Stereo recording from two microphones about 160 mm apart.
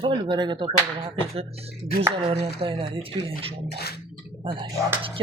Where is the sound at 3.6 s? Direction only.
90° left.